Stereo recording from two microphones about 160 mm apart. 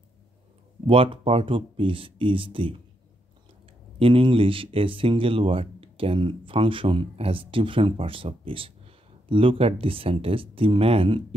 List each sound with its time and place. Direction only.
0.8 s speech: 35° right (ahead or behind)
4.0 s speech: 35° right (ahead or behind)